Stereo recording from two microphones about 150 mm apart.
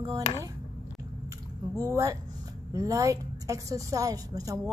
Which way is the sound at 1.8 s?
20° right (ahead or behind).